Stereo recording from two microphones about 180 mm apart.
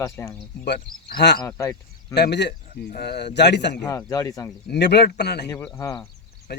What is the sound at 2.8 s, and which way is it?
Speech, 60° left (ahead or behind).